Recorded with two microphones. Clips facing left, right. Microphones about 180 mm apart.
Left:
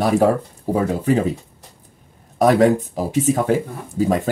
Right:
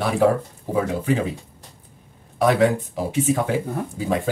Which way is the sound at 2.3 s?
40° left (ahead or behind).